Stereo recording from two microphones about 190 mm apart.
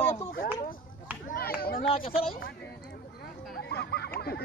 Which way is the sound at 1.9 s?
30° left (ahead or behind).